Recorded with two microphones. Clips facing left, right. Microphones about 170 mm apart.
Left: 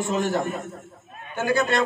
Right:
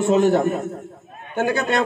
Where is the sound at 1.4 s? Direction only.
60° right (ahead or behind).